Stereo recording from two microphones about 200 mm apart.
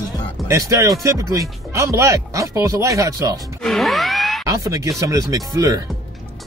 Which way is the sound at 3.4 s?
Centre (ahead or behind).